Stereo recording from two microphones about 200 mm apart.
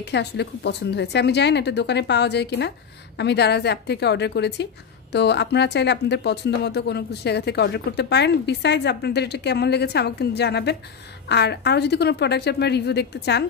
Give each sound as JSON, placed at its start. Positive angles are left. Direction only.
{"t": 0.0, "sound": "speech", "side_deg": 55}